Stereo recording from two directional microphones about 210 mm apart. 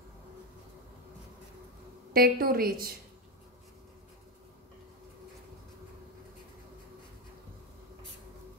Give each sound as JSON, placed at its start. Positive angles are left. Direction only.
{"t": 2.1, "sound": "a woman's voice", "side_deg": -45}